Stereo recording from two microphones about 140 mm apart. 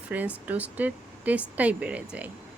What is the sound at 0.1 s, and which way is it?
Speech, 15° right (ahead or behind).